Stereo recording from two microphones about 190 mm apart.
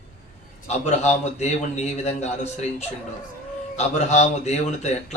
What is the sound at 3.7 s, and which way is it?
A man's voice, 35° left (ahead or behind).